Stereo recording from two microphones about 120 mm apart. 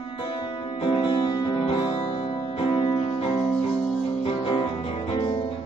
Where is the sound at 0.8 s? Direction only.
45° left (ahead or behind).